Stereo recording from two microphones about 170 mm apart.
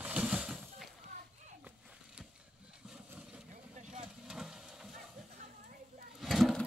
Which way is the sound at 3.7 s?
45° right (ahead or behind).